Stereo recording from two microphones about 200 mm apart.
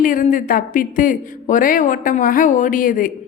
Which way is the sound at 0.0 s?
40° left (ahead or behind).